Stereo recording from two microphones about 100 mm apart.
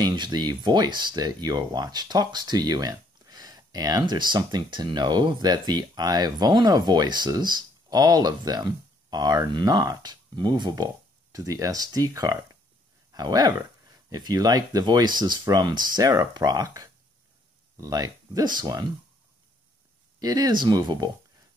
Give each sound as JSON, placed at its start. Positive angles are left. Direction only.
{"t": 0.0, "sound": "speech", "side_deg": -45}
{"t": 20.2, "sound": "speech", "side_deg": -40}